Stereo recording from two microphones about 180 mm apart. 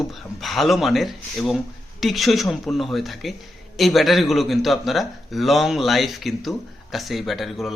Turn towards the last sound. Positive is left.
turn(degrees=0)  # may be behind; listen again after turning